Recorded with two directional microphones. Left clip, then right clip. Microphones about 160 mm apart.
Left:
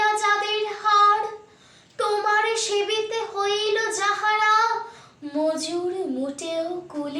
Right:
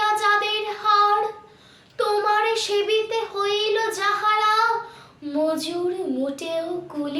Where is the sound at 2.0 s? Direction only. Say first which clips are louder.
Right 1 dB; 5° right (ahead or behind).